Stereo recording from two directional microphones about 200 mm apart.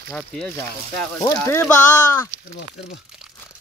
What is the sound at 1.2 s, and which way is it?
Speech, 15° left (ahead or behind).